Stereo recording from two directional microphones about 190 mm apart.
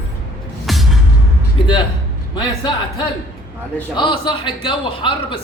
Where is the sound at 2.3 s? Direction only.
25° left (ahead or behind).